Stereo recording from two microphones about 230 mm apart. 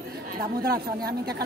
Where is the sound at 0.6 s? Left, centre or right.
Right.